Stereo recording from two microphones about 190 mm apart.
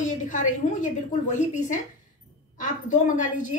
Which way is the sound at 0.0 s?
40° left (ahead or behind).